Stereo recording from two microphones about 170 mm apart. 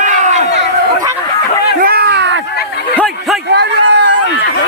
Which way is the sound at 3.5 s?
85° right.